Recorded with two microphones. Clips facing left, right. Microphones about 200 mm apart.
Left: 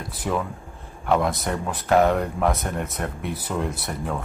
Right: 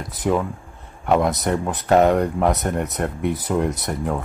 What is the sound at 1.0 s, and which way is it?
Speech, 20° right (ahead or behind).